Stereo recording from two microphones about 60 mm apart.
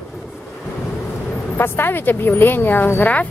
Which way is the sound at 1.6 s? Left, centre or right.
Left.